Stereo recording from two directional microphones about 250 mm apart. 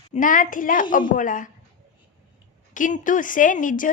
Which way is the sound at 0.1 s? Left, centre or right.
Left.